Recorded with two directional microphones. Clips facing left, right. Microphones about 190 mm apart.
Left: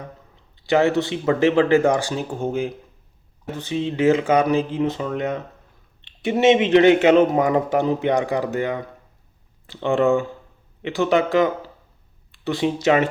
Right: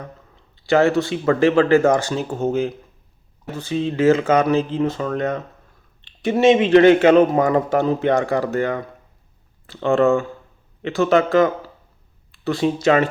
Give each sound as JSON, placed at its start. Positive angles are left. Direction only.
{"t": 0.6, "sound": "speech", "side_deg": 15}